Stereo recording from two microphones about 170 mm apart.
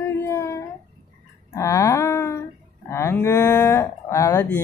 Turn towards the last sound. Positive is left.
turn(degrees=15)  # may be behind; listen again after turning